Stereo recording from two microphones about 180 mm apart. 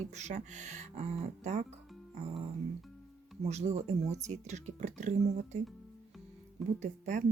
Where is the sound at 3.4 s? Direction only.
40° right (ahead or behind).